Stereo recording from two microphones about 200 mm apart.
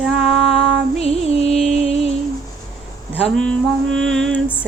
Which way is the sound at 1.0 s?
30° left (ahead or behind).